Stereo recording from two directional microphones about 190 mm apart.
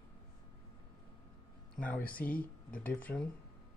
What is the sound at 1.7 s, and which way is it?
Speech, 5° left (ahead or behind).